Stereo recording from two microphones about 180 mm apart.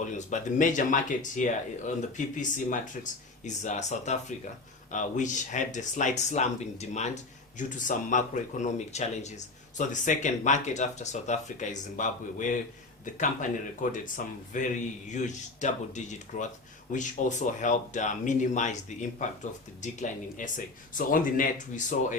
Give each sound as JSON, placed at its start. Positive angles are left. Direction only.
{"t": 0.2, "sound": "speech", "side_deg": 45}